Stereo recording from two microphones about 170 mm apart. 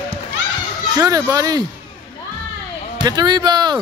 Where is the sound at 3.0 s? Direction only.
25° right (ahead or behind).